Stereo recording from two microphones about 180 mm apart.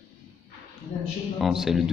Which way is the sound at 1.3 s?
Centre (ahead or behind).